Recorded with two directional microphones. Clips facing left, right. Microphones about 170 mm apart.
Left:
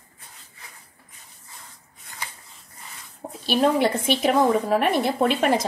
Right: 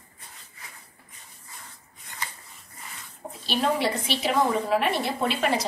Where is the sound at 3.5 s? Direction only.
50° left (ahead or behind).